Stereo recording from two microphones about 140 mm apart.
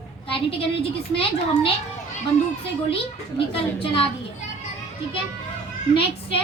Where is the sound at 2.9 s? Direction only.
40° left (ahead or behind).